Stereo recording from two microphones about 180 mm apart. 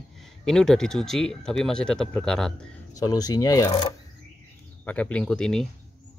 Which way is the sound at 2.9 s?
20° left (ahead or behind).